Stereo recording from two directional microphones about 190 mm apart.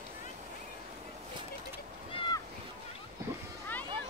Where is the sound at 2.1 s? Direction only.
25° left (ahead or behind).